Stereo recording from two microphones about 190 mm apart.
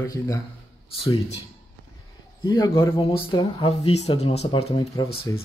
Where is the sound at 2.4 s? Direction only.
20° left (ahead or behind).